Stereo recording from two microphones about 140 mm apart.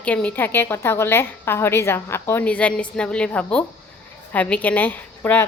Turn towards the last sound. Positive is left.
turn(degrees=10)  # may be behind; listen again after turning